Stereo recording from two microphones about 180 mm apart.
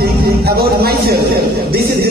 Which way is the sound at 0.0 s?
60° right (ahead or behind).